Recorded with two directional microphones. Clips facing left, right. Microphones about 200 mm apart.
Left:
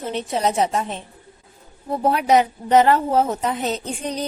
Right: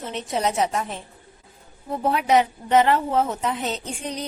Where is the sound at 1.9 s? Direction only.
40° left (ahead or behind).